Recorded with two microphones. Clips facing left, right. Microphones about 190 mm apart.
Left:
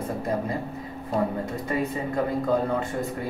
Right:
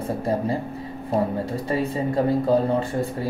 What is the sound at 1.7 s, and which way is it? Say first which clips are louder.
Speech: right 4 dB; 30° right (ahead or behind).